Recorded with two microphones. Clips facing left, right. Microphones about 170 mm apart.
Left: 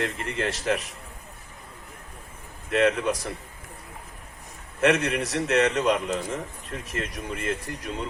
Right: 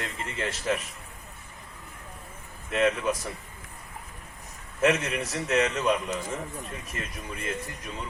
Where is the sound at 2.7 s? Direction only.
70° left (ahead or behind).